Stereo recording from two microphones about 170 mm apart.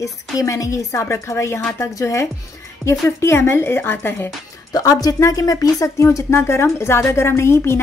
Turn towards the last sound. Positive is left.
turn(degrees=15)  # may be behind; listen again after turning